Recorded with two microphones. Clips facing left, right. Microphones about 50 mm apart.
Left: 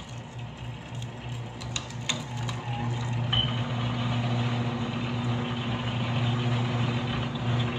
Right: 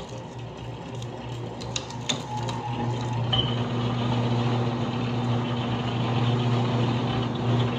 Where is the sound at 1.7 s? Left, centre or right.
Left.